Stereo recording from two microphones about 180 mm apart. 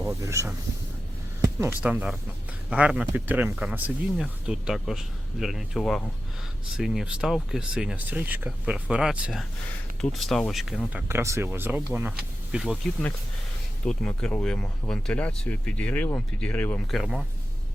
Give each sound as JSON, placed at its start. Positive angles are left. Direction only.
{"t": 0.0, "sound": "speech", "side_deg": -15}
{"t": 13.8, "sound": "speech", "side_deg": 5}